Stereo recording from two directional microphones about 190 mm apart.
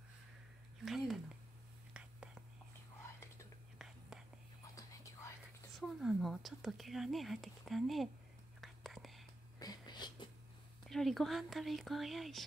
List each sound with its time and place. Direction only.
0.8 s a sound: centre (ahead or behind)
2.0 s whispering: 5° right (ahead or behind)
3.7 s whispering: 5° right (ahead or behind)
4.7 s whispering: 15° left (ahead or behind)
5.8 s speech: centre (ahead or behind)
8.5 s whispering: centre (ahead or behind)
9.6 s whispering: 20° left (ahead or behind)
10.9 s speech: centre (ahead or behind)